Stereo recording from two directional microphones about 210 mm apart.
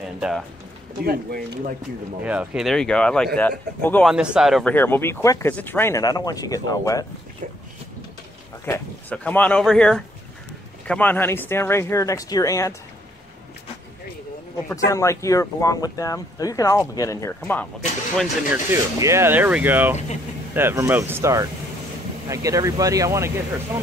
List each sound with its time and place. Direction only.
0.0 s speech: 5° right (ahead or behind)
2.2 s speech: 5° right (ahead or behind)
4.1 s speech: 5° right (ahead or behind); by 7.1 s 15° left (ahead or behind)
8.6 s speech: 10° left (ahead or behind)
14.7 s speech: 15° left (ahead or behind)
18.1 s speech: centre (ahead or behind)
18.7 s speech: 15° right (ahead or behind)